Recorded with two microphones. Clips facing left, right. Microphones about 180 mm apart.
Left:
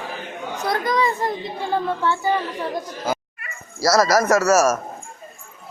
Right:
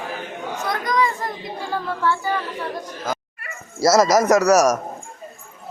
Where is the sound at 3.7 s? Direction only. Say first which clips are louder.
Right 2 dB; 20° right (ahead or behind).